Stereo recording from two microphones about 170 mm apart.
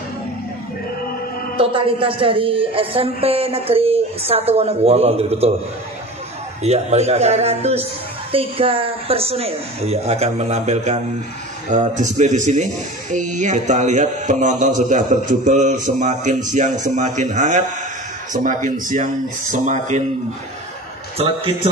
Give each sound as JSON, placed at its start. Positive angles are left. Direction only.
{"t": 1.6, "sound": "speech", "side_deg": -30}
{"t": 6.6, "sound": "speech", "side_deg": -40}
{"t": 21.2, "sound": "speech", "side_deg": -35}